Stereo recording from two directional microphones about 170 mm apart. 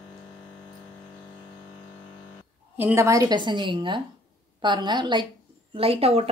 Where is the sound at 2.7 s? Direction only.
15° right (ahead or behind).